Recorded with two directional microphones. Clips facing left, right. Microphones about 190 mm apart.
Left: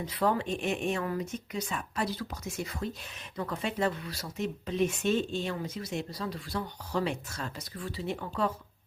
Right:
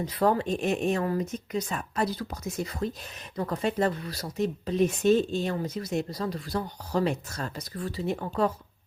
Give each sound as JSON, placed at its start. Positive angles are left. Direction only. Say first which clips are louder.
{"t": 0.2, "sound": "speech", "louder": "right 4 dB", "side_deg": -40}